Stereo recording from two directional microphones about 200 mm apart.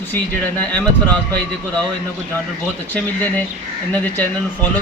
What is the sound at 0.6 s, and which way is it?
Speech, 5° left (ahead or behind).